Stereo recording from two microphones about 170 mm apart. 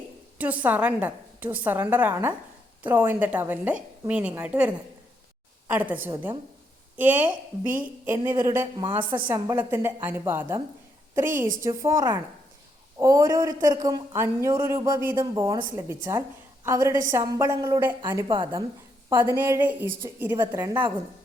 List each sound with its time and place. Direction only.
0.3 s a woman's voice: 10° right (ahead or behind)
11.3 s a woman's voice: 50° right (ahead or behind)
11.8 s a woman's voice: 20° right (ahead or behind)
18.3 s speech: 30° right (ahead or behind)
19.2 s a woman's voice: 15° right (ahead or behind)